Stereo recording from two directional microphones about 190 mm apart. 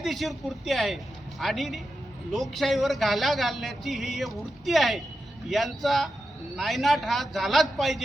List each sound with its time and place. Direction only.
0.0 s a man's voice: centre (ahead or behind)